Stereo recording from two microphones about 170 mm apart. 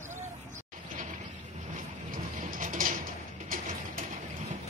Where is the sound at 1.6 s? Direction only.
50° right (ahead or behind).